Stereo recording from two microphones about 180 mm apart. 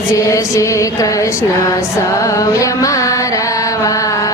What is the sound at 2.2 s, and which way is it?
Mantra, 20° left (ahead or behind).